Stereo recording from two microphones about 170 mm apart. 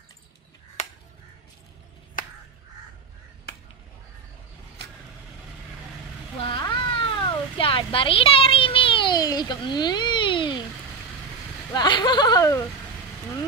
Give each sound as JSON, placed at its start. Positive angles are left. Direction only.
{"t": 6.4, "sound": "cat", "side_deg": 30}
{"t": 11.7, "sound": "speech", "side_deg": 25}